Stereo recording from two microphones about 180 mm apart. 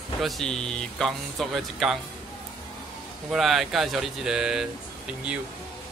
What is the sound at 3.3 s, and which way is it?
Speech, centre (ahead or behind).